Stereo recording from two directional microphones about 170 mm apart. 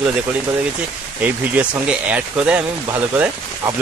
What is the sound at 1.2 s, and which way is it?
Speech, 10° right (ahead or behind).